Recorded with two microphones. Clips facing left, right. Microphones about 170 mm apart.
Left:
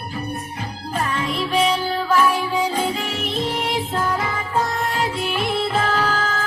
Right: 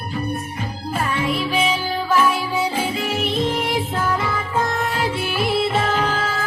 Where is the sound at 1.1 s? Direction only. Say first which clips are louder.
Left 1 dB; 5° right (ahead or behind).